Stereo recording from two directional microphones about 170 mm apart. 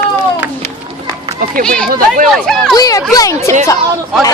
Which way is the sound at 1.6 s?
5° left (ahead or behind).